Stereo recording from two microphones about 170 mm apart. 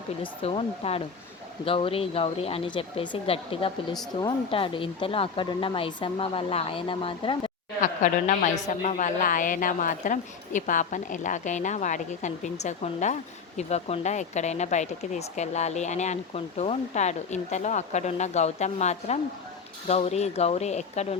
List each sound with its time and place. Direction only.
0.2 s speech: 35° left (ahead or behind)
7.8 s speech: 45° left (ahead or behind)